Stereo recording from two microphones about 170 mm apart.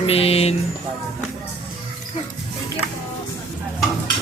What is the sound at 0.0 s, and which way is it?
Speech, 35° left (ahead or behind).